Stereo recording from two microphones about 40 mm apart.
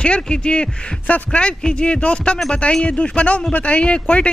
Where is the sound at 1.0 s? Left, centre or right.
Left.